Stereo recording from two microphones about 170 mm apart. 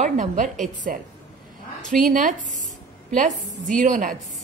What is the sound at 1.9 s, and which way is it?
Speech, 50° right (ahead or behind).